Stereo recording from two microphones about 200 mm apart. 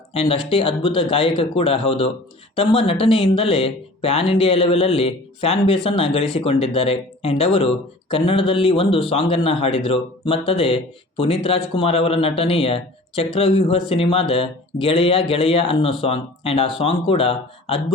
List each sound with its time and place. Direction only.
0.1 s a man's voice: 30° left (ahead or behind)